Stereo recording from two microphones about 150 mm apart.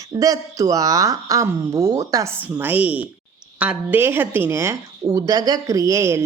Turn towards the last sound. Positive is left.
turn(degrees=-20)  # may be behind; listen again after turning